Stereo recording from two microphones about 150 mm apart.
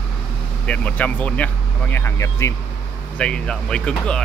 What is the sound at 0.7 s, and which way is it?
Speech, 10° left (ahead or behind).